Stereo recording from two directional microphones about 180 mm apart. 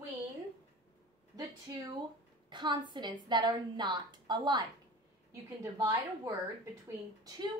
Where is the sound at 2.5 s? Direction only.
25° right (ahead or behind).